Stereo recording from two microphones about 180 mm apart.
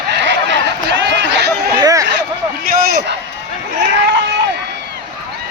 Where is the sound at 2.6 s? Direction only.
55° right (ahead or behind).